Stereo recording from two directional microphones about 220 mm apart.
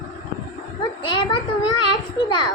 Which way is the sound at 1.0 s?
20° left (ahead or behind).